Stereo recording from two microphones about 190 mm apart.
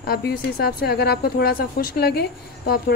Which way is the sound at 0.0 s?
55° left (ahead or behind).